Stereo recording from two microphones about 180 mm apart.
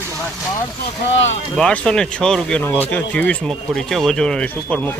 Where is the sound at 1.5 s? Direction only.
5° left (ahead or behind).